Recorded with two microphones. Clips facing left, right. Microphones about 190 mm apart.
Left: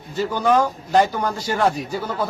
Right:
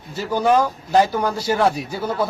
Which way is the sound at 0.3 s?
10° right (ahead or behind).